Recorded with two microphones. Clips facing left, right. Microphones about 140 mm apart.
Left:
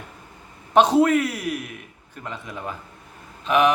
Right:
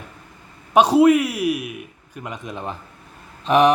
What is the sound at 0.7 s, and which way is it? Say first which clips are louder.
A man's voice: right 3 dB; 10° right (ahead or behind).